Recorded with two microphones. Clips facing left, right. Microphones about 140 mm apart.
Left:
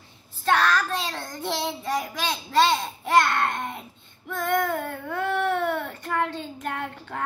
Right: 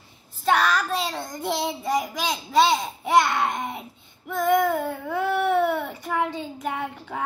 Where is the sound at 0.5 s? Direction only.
10° right (ahead or behind).